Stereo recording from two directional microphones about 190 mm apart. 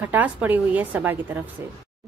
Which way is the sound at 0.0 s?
10° right (ahead or behind).